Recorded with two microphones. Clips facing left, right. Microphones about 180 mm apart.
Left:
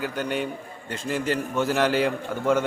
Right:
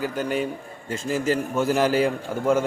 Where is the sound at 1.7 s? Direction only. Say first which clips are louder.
Right 2 dB; 45° right (ahead or behind).